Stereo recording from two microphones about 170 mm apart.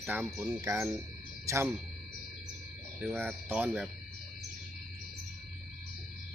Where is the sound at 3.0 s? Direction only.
10° right (ahead or behind).